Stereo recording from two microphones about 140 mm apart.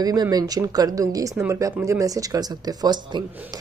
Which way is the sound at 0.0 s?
25° right (ahead or behind).